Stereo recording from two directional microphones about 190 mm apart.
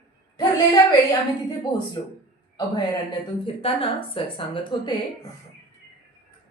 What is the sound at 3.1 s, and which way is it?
A woman's voice, 30° left (ahead or behind).